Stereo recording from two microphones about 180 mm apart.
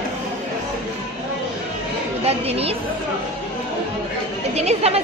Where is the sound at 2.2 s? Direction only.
35° right (ahead or behind).